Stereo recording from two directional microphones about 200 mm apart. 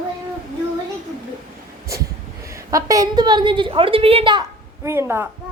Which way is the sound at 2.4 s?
15° right (ahead or behind).